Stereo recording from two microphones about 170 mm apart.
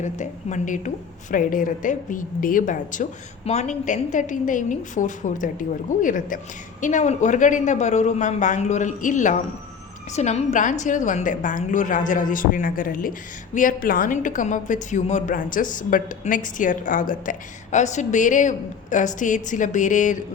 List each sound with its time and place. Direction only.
0.0 s a woman's voice: 45° left (ahead or behind)